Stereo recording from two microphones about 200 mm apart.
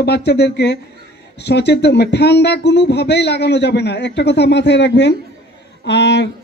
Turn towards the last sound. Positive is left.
turn(degrees=60)  # may be behind; listen again after turning